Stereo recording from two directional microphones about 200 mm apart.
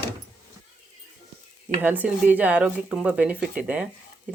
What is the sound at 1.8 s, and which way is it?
Speech, 10° right (ahead or behind).